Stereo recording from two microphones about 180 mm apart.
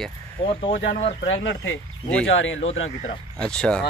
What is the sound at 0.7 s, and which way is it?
Speech, 90° left.